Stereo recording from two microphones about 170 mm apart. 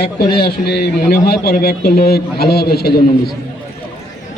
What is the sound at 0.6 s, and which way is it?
A man's voice, 75° left (ahead or behind).